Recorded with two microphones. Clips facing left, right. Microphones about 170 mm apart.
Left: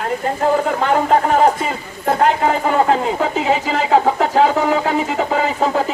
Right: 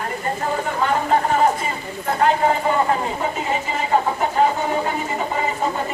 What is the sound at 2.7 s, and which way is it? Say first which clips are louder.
Speech: left 5 dB; 85° left.